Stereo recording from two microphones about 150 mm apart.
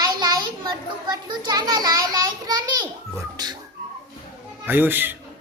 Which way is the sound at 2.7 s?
25° right (ahead or behind).